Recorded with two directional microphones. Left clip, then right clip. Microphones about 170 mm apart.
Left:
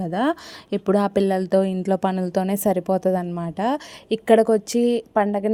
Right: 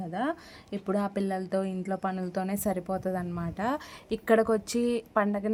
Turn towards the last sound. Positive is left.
turn(degrees=25)  # may be behind; listen again after turning